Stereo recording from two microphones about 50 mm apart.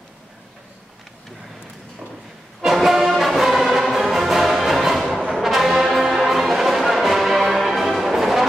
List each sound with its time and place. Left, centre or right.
2.6 s music: centre
5.4 s brass instrument: centre